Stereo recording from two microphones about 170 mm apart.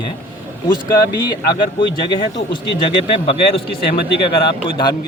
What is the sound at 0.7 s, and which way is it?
Speech, 25° left (ahead or behind).